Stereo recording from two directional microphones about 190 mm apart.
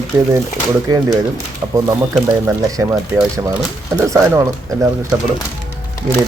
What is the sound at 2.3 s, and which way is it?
Speech, 15° right (ahead or behind).